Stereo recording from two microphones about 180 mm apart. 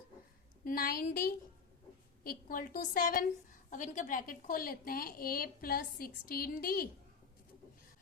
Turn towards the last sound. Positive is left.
turn(degrees=55)  # may be behind; listen again after turning